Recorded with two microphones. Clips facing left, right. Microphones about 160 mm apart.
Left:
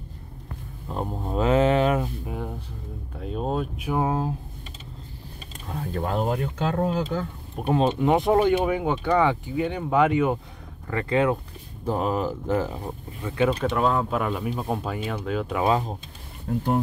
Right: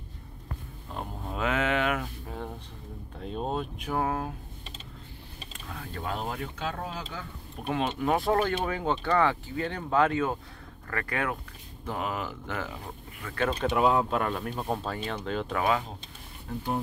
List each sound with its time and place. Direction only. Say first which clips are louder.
0.9 s a sound: left 8 dB; 35° left (ahead or behind)
2.2 s a sound: left 5 dB; 10° left (ahead or behind)
3.2 s speech: left 4 dB; 5° left (ahead or behind)
3.9 s speech: left 5 dB; 20° left (ahead or behind)
5.7 s speech: left 7 dB; 40° left (ahead or behind)
7.6 s speech: left 7 dB; 25° left (ahead or behind)
11.8 s speech: left 8 dB; 35° left (ahead or behind)
13.6 s speech: left 1 dB; 5° right (ahead or behind)